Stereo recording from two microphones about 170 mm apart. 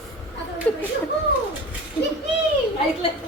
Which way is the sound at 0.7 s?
10° left (ahead or behind).